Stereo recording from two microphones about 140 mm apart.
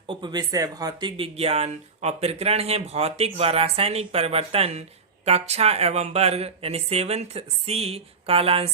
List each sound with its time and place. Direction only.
0.1 s speech: 35° right (ahead or behind)